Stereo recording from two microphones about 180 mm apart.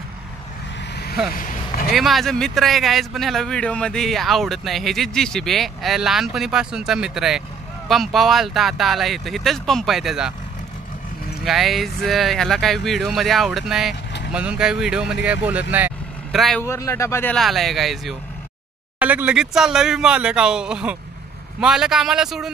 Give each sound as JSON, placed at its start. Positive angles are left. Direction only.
{"t": 1.3, "sound": "vehicle", "side_deg": 50}
{"t": 2.0, "sound": "speech", "side_deg": 0}
{"t": 11.4, "sound": "speech", "side_deg": 0}
{"t": 15.7, "sound": "vehicle", "side_deg": -5}
{"t": 16.6, "sound": "speech", "side_deg": 15}
{"t": 17.4, "sound": "speech", "side_deg": 0}